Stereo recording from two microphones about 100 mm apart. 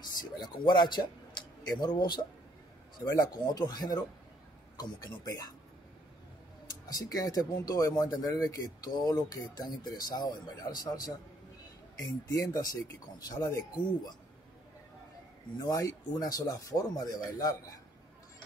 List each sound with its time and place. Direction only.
0.0 s speech: 45° left (ahead or behind)
6.9 s speech: 40° left (ahead or behind)
15.6 s speech: 35° left (ahead or behind)